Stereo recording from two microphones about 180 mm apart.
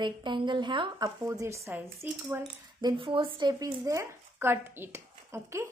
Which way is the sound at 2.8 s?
25° right (ahead or behind).